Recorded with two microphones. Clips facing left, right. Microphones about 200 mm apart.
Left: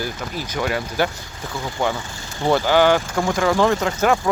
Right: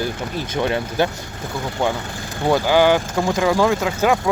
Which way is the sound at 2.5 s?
15° right (ahead or behind).